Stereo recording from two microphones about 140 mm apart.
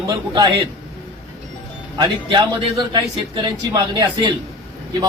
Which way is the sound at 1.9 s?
30° right (ahead or behind).